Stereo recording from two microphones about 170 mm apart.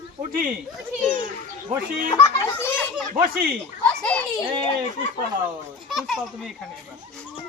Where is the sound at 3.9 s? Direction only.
5° left (ahead or behind).